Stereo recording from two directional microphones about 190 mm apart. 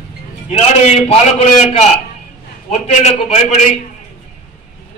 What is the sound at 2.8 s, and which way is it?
Speech, 35° left (ahead or behind).